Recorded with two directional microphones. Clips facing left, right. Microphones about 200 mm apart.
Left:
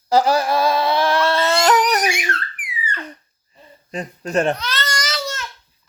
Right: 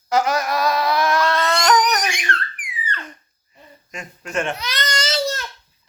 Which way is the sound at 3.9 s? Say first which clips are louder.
Left 7 dB; 35° left (ahead or behind).